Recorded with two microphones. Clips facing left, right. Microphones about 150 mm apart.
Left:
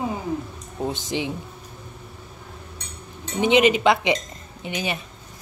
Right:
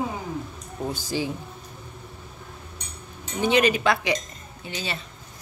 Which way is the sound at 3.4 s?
20° left (ahead or behind).